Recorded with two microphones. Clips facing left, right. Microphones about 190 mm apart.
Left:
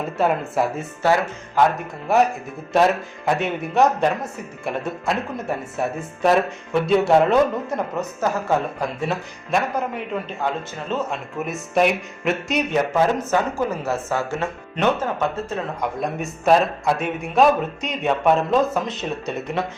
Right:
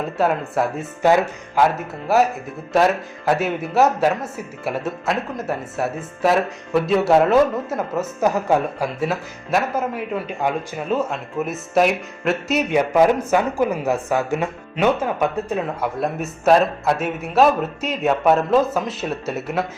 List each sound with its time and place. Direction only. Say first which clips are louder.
0.0 s speech: right 1 dB; centre (ahead or behind)
1.0 s speech: right 3 dB; 15° right (ahead or behind)
2.1 s speech: right 1 dB; centre (ahead or behind)
8.2 s speech: right 3 dB; 15° right (ahead or behind)
9.0 s speech: right 2 dB; 5° right (ahead or behind)
16.0 s speech: right 2 dB; 5° right (ahead or behind)